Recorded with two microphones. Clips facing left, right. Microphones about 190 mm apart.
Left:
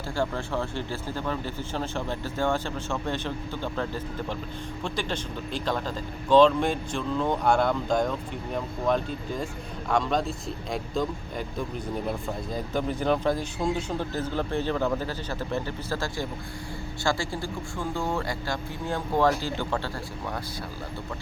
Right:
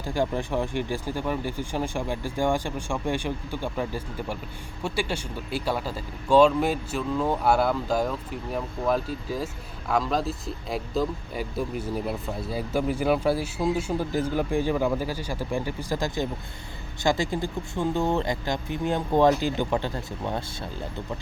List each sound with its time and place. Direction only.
0.1 s speech: 15° right (ahead or behind)